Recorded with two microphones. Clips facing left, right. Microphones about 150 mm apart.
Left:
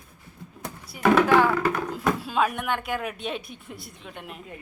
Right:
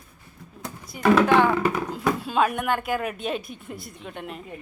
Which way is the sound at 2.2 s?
Centre (ahead or behind).